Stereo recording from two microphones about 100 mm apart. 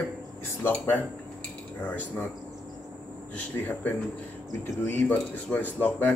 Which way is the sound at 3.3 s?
15° left (ahead or behind).